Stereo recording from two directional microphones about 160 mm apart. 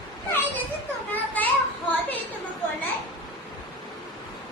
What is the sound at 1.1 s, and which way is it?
Children playing, 10° left (ahead or behind).